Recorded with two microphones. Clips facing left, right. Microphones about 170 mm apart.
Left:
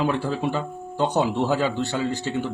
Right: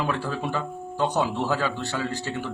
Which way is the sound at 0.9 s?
20° left (ahead or behind).